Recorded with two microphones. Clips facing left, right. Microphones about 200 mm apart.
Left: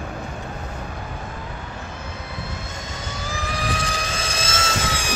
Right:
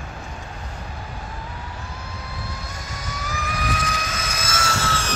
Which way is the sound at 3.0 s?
25° left (ahead or behind).